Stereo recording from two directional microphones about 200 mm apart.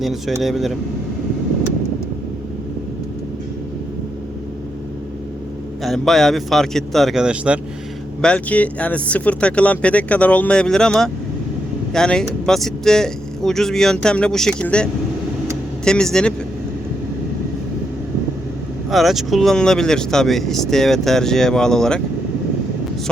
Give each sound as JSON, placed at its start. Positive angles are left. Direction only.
{"t": 0.0, "sound": "speech", "side_deg": 0}
{"t": 5.8, "sound": "speech", "side_deg": 0}
{"t": 8.2, "sound": "speech", "side_deg": 5}
{"t": 18.9, "sound": "speech", "side_deg": 0}